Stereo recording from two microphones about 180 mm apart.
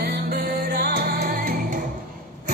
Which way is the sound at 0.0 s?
60° right (ahead or behind).